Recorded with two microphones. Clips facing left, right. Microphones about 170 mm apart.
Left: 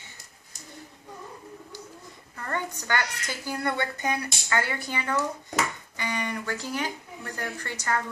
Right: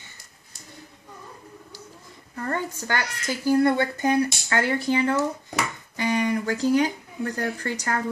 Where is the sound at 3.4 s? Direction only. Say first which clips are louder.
Right 10 dB; 40° right (ahead or behind).